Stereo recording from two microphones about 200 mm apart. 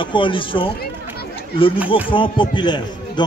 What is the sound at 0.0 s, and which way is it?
Speech, 25° left (ahead or behind).